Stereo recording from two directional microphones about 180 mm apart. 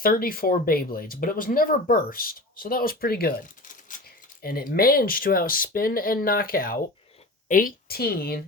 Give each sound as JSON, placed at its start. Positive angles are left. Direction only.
{"t": 0.0, "sound": "a woman's voice", "side_deg": 55}